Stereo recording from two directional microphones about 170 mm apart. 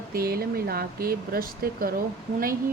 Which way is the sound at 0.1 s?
65° right (ahead or behind).